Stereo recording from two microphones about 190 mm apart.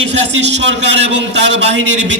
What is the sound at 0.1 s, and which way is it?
A man's voice, 65° right (ahead or behind).